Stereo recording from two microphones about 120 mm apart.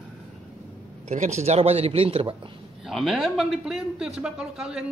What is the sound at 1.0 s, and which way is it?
A man's voice, 80° right.